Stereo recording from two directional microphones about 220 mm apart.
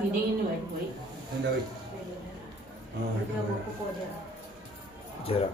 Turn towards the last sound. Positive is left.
turn(degrees=25)  # may be behind; listen again after turning